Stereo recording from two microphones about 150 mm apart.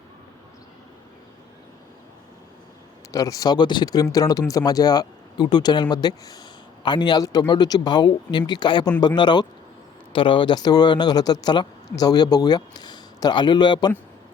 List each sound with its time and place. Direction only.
3.1 s speech: 20° left (ahead or behind)